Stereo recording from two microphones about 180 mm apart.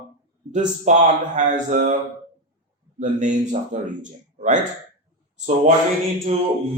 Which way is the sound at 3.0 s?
45° right (ahead or behind).